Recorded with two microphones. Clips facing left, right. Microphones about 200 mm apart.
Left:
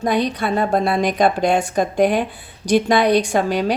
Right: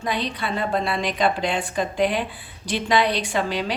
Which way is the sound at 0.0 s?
45° left (ahead or behind).